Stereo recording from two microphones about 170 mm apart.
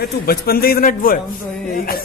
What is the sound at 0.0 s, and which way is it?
A man's voice, 65° left (ahead or behind).